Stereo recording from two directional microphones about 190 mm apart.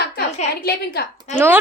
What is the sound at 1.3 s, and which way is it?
Speech, 10° right (ahead or behind).